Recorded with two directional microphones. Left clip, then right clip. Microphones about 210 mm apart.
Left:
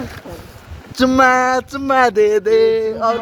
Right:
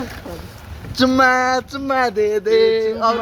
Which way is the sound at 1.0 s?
25° left (ahead or behind).